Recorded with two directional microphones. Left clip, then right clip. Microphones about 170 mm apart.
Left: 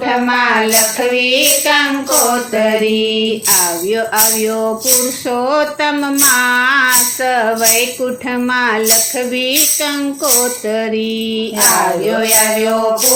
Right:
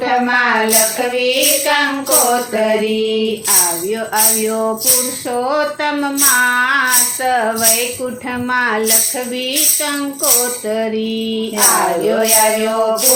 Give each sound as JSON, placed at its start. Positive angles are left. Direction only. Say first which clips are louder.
{"t": 1.1, "sound": "music", "louder": "left 3 dB", "side_deg": 35}
{"t": 3.9, "sound": "music", "louder": "left 3 dB", "side_deg": 35}
{"t": 10.7, "sound": "music", "louder": "right 1 dB", "side_deg": 40}